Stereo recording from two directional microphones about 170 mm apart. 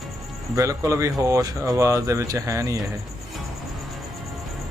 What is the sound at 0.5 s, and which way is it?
Speech, 20° right (ahead or behind).